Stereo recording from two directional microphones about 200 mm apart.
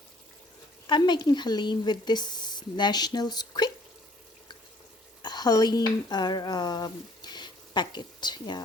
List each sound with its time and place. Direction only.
0.9 s speech: 20° left (ahead or behind)
5.2 s speech: 20° left (ahead or behind)